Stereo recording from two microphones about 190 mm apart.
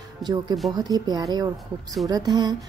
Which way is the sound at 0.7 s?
20° right (ahead or behind).